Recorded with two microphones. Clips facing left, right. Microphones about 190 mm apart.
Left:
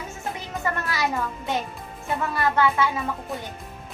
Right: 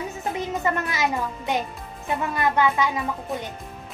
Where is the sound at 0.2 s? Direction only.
20° right (ahead or behind).